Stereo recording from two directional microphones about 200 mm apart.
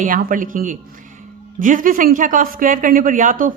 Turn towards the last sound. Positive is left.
turn(degrees=-40)  # may be behind; listen again after turning